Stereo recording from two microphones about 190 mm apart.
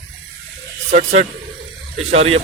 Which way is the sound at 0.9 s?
40° right (ahead or behind).